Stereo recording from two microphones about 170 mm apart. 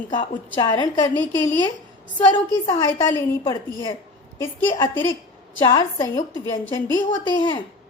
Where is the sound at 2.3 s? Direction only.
25° left (ahead or behind).